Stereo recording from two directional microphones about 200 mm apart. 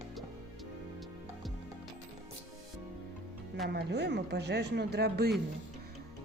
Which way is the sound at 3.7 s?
55° right (ahead or behind).